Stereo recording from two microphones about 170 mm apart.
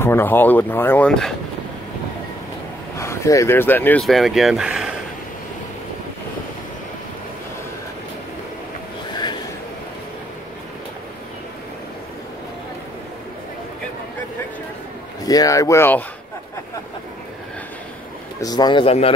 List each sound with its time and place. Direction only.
0.0 s speech: 15° left (ahead or behind)
3.0 s speech: 20° left (ahead or behind)
4.0 s speech: centre (ahead or behind)
15.2 s speech: 20° left (ahead or behind)
18.4 s speech: 25° left (ahead or behind)